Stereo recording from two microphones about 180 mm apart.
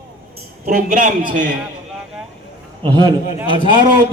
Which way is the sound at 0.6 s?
45° right (ahead or behind).